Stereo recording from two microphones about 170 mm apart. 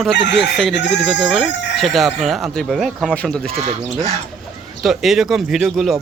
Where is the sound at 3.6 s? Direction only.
40° right (ahead or behind).